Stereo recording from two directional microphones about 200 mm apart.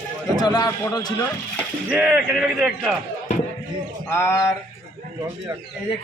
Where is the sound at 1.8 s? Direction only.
5° right (ahead or behind).